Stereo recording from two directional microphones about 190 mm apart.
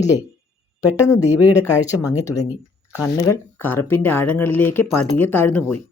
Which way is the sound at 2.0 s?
20° left (ahead or behind).